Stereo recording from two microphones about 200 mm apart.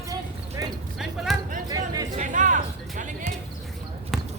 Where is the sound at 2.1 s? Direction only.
40° right (ahead or behind).